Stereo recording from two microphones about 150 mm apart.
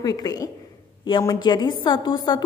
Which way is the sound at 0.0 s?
25° left (ahead or behind).